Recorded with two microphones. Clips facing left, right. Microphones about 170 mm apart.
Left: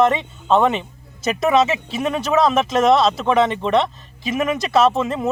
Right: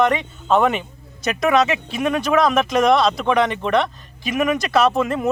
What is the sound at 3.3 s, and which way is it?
Speech, 25° left (ahead or behind).